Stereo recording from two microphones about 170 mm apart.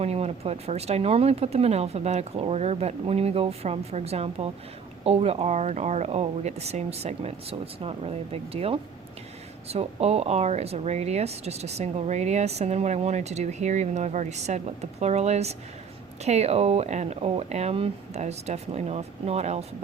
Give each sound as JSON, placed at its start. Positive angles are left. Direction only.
{"t": 0.0, "sound": "speech", "side_deg": -40}